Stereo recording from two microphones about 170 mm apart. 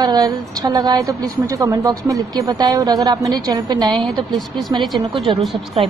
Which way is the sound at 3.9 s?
Centre (ahead or behind).